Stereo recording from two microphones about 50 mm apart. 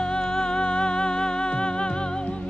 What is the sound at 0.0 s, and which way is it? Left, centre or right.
Music, centre.